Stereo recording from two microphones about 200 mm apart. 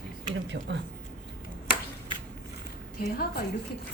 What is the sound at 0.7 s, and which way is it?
Speech, 60° right (ahead or behind).